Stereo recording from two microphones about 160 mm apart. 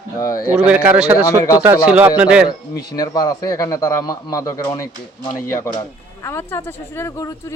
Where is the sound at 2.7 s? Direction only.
25° left (ahead or behind).